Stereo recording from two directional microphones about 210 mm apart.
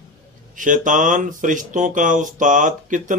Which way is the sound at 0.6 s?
40° right (ahead or behind).